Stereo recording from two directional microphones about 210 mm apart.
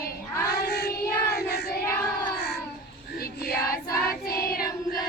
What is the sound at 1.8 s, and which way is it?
Child singing, 10° left (ahead or behind).